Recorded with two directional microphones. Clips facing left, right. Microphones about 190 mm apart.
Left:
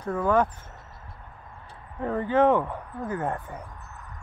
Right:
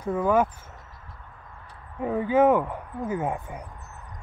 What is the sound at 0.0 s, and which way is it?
Speech, 10° right (ahead or behind).